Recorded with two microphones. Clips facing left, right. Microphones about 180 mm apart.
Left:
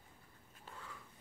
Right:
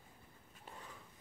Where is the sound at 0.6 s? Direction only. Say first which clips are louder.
Even; 20° right (ahead or behind).